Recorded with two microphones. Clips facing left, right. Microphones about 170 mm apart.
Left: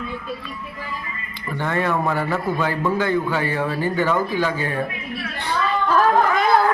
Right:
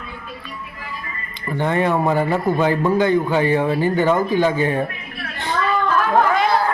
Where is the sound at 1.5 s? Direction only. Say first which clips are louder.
Right 4 dB; 20° right (ahead or behind).